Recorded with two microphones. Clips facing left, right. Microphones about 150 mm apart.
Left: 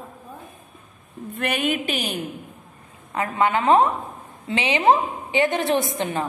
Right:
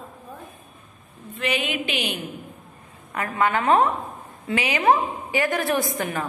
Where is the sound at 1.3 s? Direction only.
55° left (ahead or behind).